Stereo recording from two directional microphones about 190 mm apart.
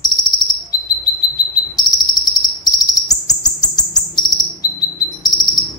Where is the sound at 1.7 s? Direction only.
20° left (ahead or behind).